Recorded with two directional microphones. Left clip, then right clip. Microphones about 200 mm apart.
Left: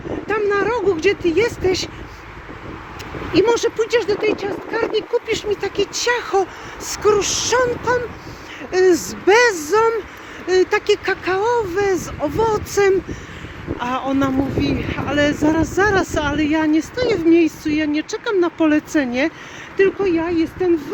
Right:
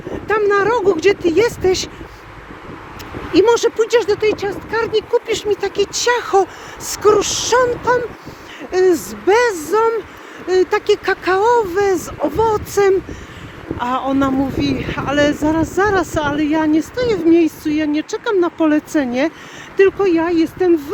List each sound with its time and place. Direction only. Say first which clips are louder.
0.3 s a sound: right 4 dB; 15° right (ahead or behind)
3.3 s speech: right 3 dB; 15° right (ahead or behind)
8.7 s speech: right 1 dB; centre (ahead or behind)
14.5 s speech: right 1 dB; 30° right (ahead or behind)
15.1 s speech: right 2 dB; 10° right (ahead or behind)
19.7 s speech: right 4 dB; 25° right (ahead or behind)